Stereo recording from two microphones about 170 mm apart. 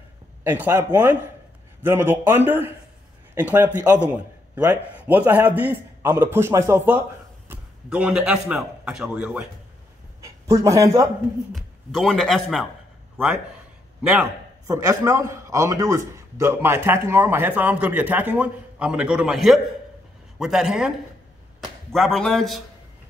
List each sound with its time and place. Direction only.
0.4 s a man's voice: 10° right (ahead or behind)
10.2 s speech: 20° right (ahead or behind)
11.5 s speech: centre (ahead or behind)
14.7 s a man's voice: 15° right (ahead or behind); by 22.6 s centre (ahead or behind)